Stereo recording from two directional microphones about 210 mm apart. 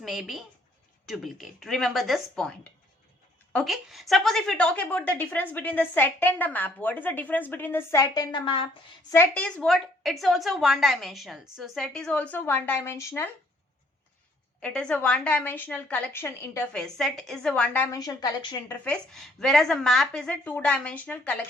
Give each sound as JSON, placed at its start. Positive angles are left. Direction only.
{"t": 0.0, "sound": "a woman's voice", "side_deg": 0}
{"t": 3.5, "sound": "a woman's voice", "side_deg": 0}
{"t": 9.1, "sound": "a woman's voice", "side_deg": 5}
{"t": 14.6, "sound": "a woman's voice", "side_deg": 5}
{"t": 17.9, "sound": "a woman's voice", "side_deg": 20}
{"t": 18.9, "sound": "a woman's voice", "side_deg": 5}